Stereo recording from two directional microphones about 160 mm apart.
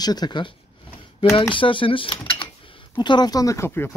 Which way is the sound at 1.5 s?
30° left (ahead or behind).